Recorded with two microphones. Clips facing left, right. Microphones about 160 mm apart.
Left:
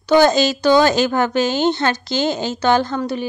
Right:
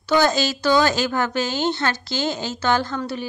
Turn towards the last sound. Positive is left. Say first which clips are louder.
# left 5 dB
turn(degrees=20)  # may be behind; listen again after turning